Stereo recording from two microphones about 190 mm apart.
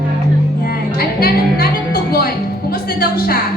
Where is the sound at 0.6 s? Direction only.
55° left (ahead or behind).